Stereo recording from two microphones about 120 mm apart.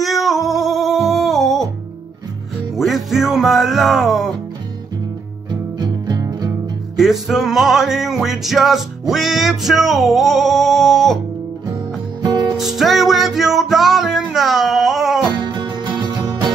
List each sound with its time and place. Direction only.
0.0 s music: centre (ahead or behind)
2.7 s music: centre (ahead or behind)
5.5 s music: 35° right (ahead or behind)
7.0 s music: centre (ahead or behind)
12.2 s music: 35° right (ahead or behind)
12.5 s music: centre (ahead or behind)
15.7 s music: 35° right (ahead or behind)